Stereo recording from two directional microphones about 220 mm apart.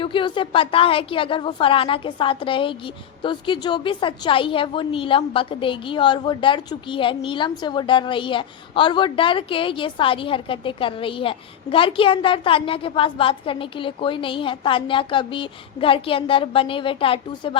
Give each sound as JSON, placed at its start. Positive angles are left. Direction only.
{"t": 0.0, "sound": "a woman's voice", "side_deg": 25}